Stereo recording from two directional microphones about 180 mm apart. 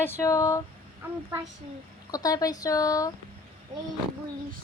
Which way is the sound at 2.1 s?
20° left (ahead or behind).